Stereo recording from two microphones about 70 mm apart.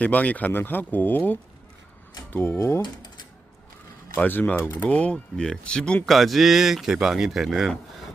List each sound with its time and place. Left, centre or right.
0.0 s speech: left
2.6 s speech: left
2.8 s typewriter: left
4.2 s speech: left
6.1 s speech: centre